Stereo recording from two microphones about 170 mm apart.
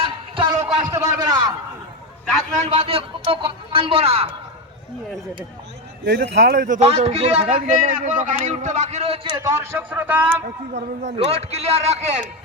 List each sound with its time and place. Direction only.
0.0 s a sound: 30° right (ahead or behind)
2.7 s a man's voice: 30° right (ahead or behind)
6.1 s a man's voice: 90° right
6.6 s a man's voice: 50° right (ahead or behind)
6.8 s a man's voice: 40° right (ahead or behind)
9.6 s speech: 10° right (ahead or behind)
10.8 s a man's voice: 40° right (ahead or behind)